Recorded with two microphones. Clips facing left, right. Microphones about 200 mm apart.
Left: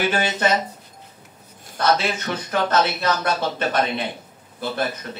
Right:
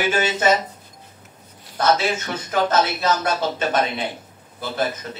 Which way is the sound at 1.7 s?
55° left (ahead or behind).